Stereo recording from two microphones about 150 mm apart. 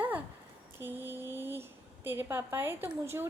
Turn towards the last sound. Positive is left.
turn(degrees=-15)  # may be behind; listen again after turning